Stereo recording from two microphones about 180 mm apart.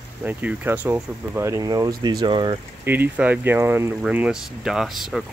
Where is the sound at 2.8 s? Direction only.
10° right (ahead or behind).